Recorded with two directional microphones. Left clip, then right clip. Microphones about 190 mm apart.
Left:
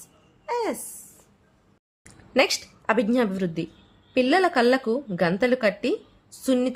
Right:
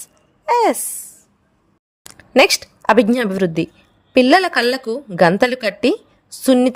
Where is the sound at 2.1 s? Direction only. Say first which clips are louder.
Right 9 dB; 50° right (ahead or behind).